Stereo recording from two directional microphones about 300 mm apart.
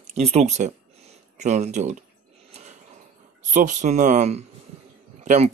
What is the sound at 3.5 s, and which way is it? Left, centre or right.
Speech, right.